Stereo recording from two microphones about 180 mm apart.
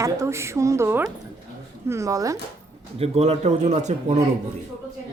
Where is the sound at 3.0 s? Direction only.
35° right (ahead or behind).